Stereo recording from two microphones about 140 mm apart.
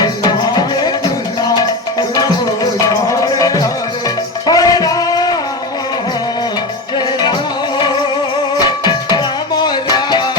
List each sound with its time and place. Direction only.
0.0 s music: 30° left (ahead or behind)
8.6 s music: 30° left (ahead or behind)